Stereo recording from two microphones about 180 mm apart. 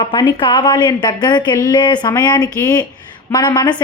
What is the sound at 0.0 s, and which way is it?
A woman's voice, 25° left (ahead or behind).